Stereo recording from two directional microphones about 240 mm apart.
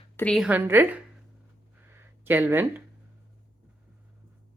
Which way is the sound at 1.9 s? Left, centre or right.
Centre.